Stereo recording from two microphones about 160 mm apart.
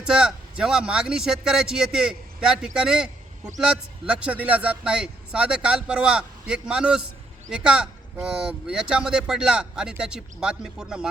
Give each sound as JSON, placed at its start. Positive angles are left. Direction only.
{"t": 0.0, "sound": "speech", "side_deg": -5}